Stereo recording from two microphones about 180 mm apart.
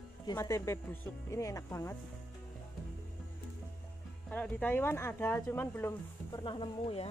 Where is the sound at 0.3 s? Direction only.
20° left (ahead or behind).